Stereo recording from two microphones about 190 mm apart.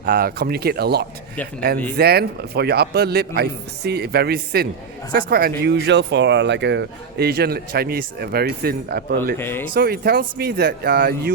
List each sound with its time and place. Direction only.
0.0 s speech: 50° right (ahead or behind)
9.4 s speech: 10° left (ahead or behind)
9.7 s speech: 55° right (ahead or behind)